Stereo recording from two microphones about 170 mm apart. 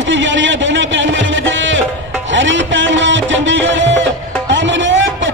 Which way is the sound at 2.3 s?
90° right.